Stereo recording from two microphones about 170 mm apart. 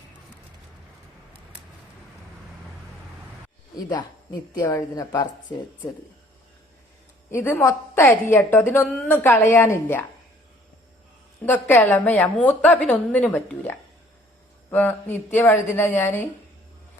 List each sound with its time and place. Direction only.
3.8 s a woman's voice: 20° left (ahead or behind)
7.3 s a woman's voice: 15° left (ahead or behind)
11.4 s a woman's voice: 10° left (ahead or behind)